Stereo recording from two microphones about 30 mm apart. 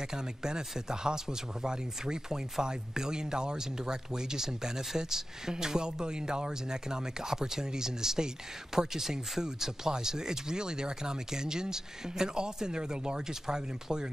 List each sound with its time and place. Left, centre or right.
0.1 s speech: right